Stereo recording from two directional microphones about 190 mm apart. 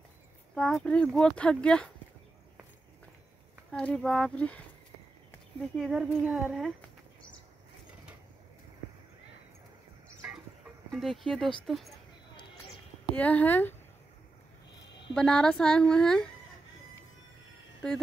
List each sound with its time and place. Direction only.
0.6 s speech: 5° left (ahead or behind)
3.7 s speech: 5° left (ahead or behind)
5.8 s speech: centre (ahead or behind)
10.9 s speech: centre (ahead or behind)
13.1 s speech: 10° left (ahead or behind)
15.1 s speech: 5° left (ahead or behind)